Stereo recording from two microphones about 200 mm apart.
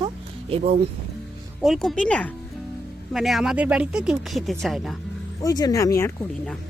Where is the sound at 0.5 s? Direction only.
30° right (ahead or behind).